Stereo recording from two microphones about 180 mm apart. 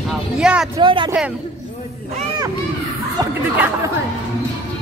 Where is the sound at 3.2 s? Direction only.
20° right (ahead or behind).